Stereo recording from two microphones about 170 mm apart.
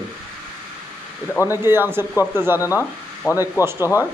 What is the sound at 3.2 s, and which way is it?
Speech, 20° left (ahead or behind).